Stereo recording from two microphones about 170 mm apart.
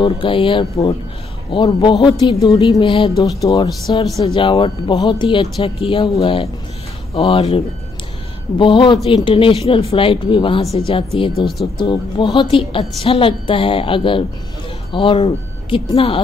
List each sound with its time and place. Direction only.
0.0 s speech: 30° left (ahead or behind)